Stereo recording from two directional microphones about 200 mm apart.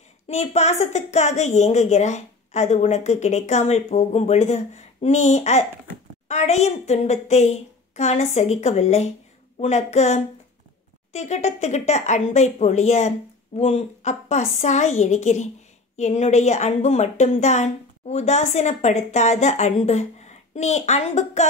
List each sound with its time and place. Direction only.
0.3 s a woman's voice: 35° left (ahead or behind)